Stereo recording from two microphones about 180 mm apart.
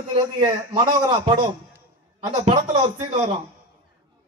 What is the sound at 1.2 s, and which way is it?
A man's voice, 35° right (ahead or behind).